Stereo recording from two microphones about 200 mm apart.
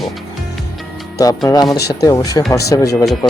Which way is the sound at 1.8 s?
55° left (ahead or behind).